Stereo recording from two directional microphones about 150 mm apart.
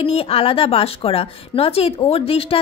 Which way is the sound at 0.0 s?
40° left (ahead or behind).